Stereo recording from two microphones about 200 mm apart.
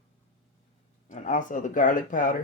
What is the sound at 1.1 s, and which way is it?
Speech, 40° left (ahead or behind).